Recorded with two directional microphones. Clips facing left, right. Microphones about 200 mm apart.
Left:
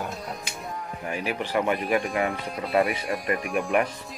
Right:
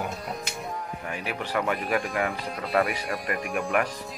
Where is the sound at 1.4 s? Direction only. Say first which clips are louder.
Left 2 dB; 25° left (ahead or behind).